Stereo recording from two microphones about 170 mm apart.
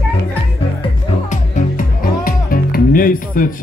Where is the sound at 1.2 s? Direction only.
50° left (ahead or behind).